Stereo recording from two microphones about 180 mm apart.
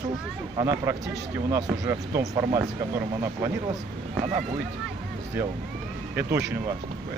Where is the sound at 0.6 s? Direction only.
20° right (ahead or behind).